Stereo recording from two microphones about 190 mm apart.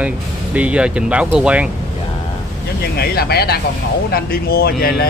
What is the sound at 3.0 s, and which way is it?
Speech, 55° left (ahead or behind).